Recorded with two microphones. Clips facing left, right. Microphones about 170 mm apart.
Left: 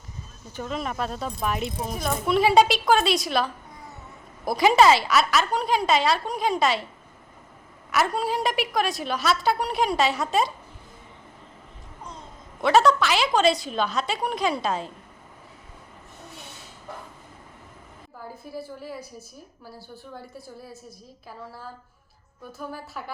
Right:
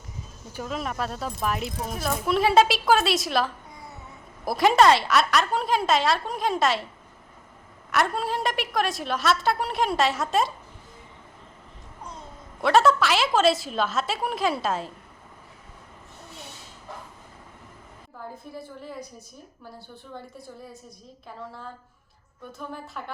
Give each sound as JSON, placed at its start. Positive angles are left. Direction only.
{"t": 0.5, "sound": "speech", "side_deg": -5}
{"t": 7.9, "sound": "speech", "side_deg": 0}
{"t": 12.6, "sound": "speech", "side_deg": 0}
{"t": 18.5, "sound": "speech", "side_deg": 5}